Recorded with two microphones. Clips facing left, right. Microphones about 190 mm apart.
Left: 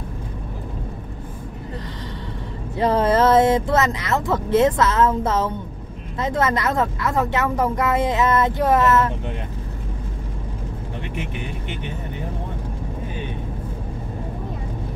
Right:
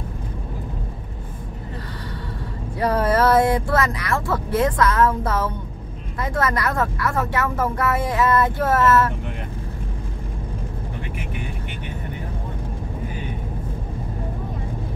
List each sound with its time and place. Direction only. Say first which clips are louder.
2.8 s a woman's voice: left 2 dB; 25° left (ahead or behind)